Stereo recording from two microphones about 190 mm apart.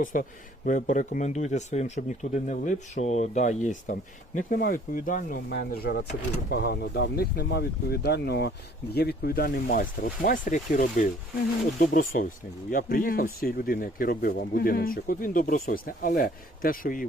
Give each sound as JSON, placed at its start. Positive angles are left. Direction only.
{"t": 0.0, "sound": "speech", "side_deg": 45}
{"t": 12.1, "sound": "speech", "side_deg": 45}